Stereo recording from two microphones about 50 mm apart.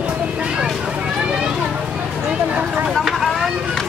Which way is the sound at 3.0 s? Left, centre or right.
Centre.